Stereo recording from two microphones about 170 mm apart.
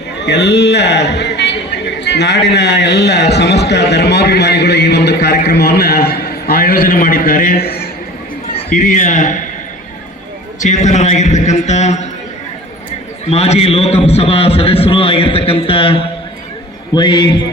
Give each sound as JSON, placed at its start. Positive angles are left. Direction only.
{"t": 0.2, "sound": "a man's voice", "side_deg": 85}
{"t": 10.6, "sound": "a man's voice", "side_deg": 45}
{"t": 13.2, "sound": "a man's voice", "side_deg": 40}